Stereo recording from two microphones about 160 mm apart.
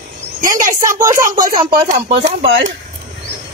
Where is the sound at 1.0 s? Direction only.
20° right (ahead or behind).